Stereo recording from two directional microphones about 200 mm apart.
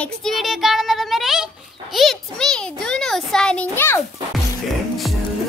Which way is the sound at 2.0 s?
Centre (ahead or behind).